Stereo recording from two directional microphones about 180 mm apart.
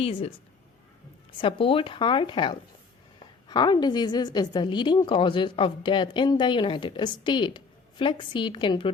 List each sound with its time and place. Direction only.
0.0 s a woman's voice: 30° left (ahead or behind)
1.4 s a woman's voice: 30° left (ahead or behind)